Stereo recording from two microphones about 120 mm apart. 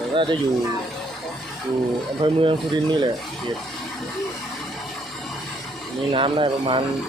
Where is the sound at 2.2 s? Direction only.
45° right (ahead or behind).